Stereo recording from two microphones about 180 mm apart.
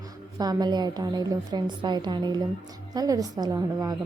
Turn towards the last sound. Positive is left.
turn(degrees=-20)  # may be behind; listen again after turning